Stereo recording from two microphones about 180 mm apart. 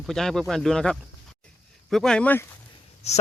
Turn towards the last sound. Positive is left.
turn(degrees=35)  # may be behind; listen again after turning